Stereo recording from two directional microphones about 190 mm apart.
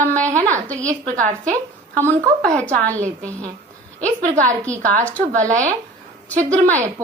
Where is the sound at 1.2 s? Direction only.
40° right (ahead or behind).